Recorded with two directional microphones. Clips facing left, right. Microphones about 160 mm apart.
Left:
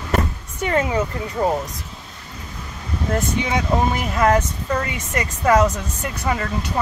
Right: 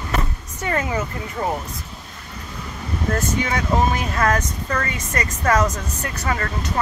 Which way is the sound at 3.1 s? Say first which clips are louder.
Left 2 dB; 20° left (ahead or behind).